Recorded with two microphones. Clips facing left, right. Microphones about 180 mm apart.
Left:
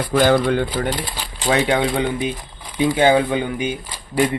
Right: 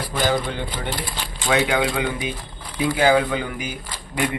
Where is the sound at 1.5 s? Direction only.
30° left (ahead or behind).